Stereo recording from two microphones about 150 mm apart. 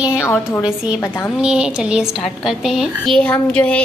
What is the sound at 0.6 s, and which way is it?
Speech, 5° right (ahead or behind).